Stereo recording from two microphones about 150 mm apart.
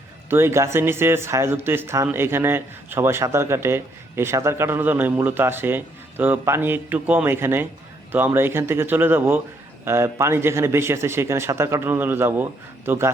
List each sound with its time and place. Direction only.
0.3 s a man's voice: 15° right (ahead or behind)